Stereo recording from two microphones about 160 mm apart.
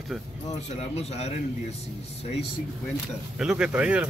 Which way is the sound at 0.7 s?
45° left (ahead or behind).